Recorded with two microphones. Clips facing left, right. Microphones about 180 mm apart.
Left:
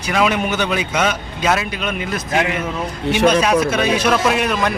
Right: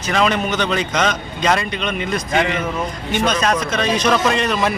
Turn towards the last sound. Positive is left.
turn(degrees=5)  # may be behind; listen again after turning